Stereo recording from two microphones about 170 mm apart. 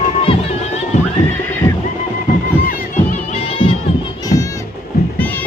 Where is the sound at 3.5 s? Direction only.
30° left (ahead or behind).